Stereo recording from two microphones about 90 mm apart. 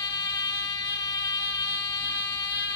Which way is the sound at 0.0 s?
45° left (ahead or behind).